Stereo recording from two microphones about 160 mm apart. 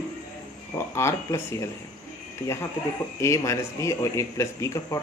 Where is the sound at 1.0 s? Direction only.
15° left (ahead or behind).